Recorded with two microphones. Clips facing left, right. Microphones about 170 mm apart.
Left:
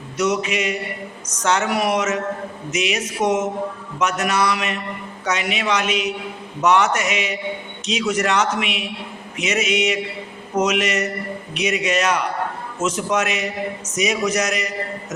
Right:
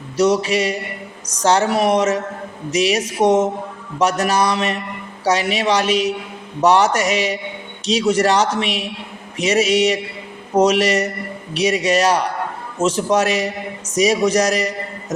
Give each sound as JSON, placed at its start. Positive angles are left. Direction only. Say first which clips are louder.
{"t": 0.2, "sound": "a man's voice", "louder": "right 5 dB", "side_deg": -35}